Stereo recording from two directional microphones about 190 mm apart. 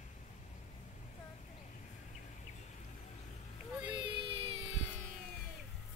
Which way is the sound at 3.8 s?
25° right (ahead or behind).